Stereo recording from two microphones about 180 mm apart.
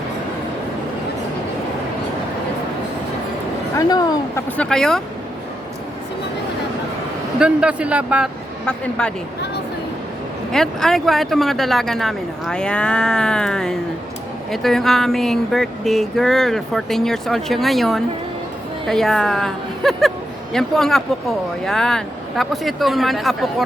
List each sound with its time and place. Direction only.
3.8 s speech: 20° left (ahead or behind)
4.5 s speech: 5° left (ahead or behind)
7.3 s speech: 5° right (ahead or behind)
8.6 s speech: 5° left (ahead or behind)
10.5 s speech: 5° left (ahead or behind)